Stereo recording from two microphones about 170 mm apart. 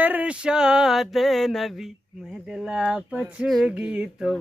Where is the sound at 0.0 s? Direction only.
10° right (ahead or behind).